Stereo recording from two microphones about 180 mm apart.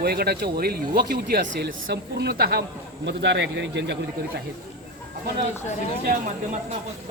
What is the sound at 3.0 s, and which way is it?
Speech, 75° right (ahead or behind).